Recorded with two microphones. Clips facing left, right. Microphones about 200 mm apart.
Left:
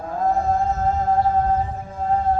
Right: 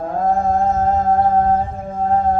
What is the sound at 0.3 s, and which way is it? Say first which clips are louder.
Music: right 3 dB; 50° right (ahead or behind).